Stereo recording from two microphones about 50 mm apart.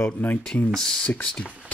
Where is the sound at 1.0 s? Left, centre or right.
Left.